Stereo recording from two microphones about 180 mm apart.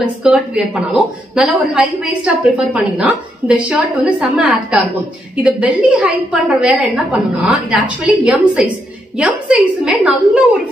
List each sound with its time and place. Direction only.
0.0 s a woman's voice: 5° right (ahead or behind)